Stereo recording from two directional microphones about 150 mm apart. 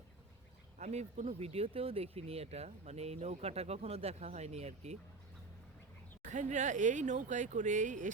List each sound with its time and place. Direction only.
0.8 s speech: 45° right (ahead or behind)
6.2 s speech: 55° right (ahead or behind)